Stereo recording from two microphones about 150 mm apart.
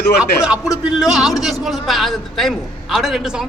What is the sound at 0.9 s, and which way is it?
A man's voice, 5° right (ahead or behind).